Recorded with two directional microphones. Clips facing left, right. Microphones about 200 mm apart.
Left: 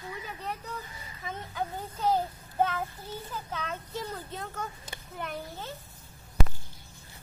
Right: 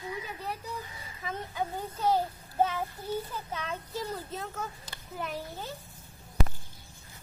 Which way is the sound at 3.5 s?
5° right (ahead or behind).